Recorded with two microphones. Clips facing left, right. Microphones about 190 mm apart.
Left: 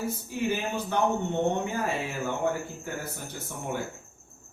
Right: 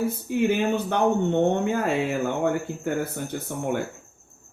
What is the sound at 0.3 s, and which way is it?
Speech, 60° right (ahead or behind).